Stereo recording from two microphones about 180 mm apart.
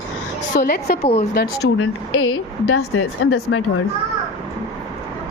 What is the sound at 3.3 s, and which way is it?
Speech, 70° left (ahead or behind).